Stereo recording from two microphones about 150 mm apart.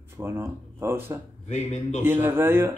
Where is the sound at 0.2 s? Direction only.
15° right (ahead or behind).